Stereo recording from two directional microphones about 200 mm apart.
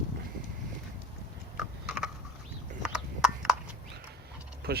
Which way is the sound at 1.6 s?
Centre (ahead or behind).